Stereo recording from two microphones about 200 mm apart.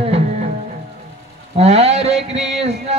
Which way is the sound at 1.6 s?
30° right (ahead or behind).